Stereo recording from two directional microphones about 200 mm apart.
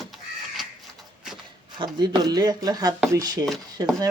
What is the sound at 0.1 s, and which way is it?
Crow, centre (ahead or behind).